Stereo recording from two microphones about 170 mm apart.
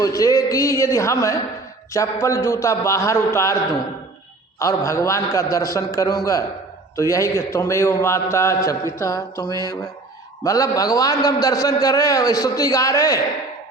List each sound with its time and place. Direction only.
0.0 s a man's voice: 20° left (ahead or behind)